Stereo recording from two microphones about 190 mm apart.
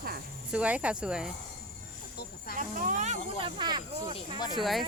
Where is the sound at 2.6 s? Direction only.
40° right (ahead or behind).